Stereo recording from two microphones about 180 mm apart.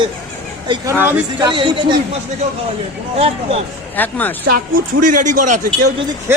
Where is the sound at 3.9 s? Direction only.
10° left (ahead or behind).